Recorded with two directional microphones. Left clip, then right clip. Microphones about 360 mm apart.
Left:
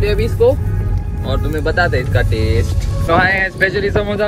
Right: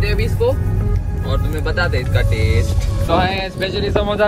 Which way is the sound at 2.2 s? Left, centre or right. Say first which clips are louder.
Left 2 dB; centre.